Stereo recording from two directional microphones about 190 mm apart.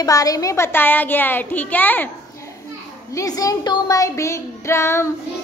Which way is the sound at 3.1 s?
20° left (ahead or behind).